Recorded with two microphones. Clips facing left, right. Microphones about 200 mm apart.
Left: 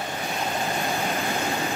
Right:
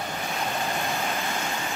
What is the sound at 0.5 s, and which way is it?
Vehicle, 15° left (ahead or behind).